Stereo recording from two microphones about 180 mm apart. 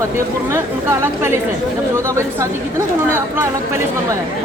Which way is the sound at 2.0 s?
15° right (ahead or behind).